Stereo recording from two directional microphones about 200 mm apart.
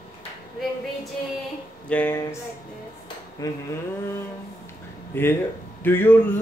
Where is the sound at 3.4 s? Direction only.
20° left (ahead or behind).